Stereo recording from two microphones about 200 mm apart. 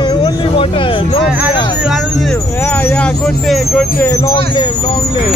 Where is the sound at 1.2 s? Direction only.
5° right (ahead or behind).